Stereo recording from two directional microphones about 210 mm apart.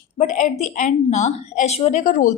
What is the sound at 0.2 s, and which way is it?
A woman's voice, 35° left (ahead or behind).